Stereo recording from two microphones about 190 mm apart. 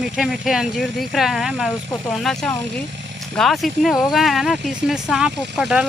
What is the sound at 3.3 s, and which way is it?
Speech, centre (ahead or behind).